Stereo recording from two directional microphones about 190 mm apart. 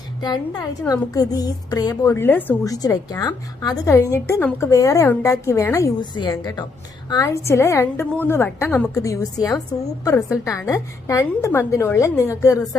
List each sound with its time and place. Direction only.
0.2 s a woman's voice: 20° left (ahead or behind)
10.2 s a woman's voice: 5° right (ahead or behind)
10.4 s a woman's voice: 15° left (ahead or behind)